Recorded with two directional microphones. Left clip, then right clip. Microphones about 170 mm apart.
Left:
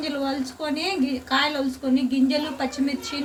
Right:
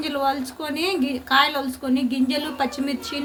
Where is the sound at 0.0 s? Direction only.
55° right (ahead or behind).